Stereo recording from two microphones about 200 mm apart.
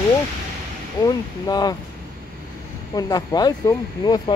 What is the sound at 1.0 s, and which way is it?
Speech, 20° left (ahead or behind).